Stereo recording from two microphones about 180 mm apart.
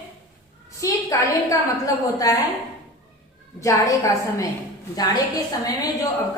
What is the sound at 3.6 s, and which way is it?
A woman's voice, 15° left (ahead or behind).